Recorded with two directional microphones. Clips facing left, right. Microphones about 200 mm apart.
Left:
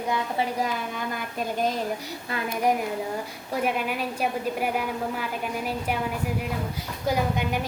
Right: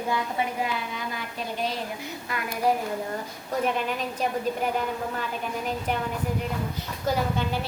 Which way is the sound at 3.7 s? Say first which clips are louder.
Even; 10° left (ahead or behind).